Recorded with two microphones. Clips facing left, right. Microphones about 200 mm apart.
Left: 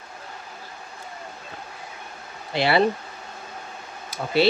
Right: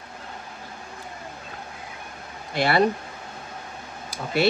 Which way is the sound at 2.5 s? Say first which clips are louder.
Left 1 dB; 50° right (ahead or behind).